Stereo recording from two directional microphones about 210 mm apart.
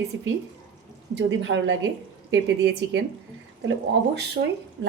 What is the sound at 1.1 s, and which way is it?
Speech, 60° right (ahead or behind).